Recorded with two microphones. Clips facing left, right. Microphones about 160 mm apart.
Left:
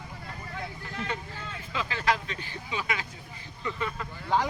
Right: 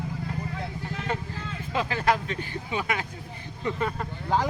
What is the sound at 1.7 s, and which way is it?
Speech, 45° right (ahead or behind).